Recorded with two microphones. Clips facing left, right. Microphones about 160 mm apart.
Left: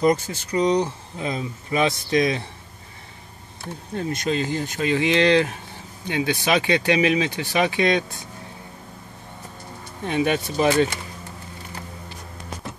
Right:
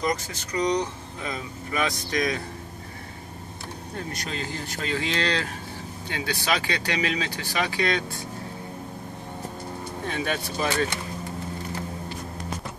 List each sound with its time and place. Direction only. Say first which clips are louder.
0.0 s speech: left 8 dB; 30° left (ahead or behind)
4.1 s speech: left 11 dB; 20° left (ahead or behind)
10.0 s speech: left 8 dB; 15° left (ahead or behind)